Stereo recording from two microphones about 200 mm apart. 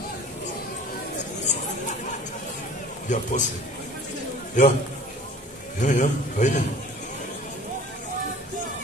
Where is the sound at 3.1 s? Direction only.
40° left (ahead or behind).